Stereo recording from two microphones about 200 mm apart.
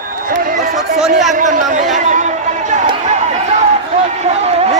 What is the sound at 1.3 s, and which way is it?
Speech, 40° right (ahead or behind).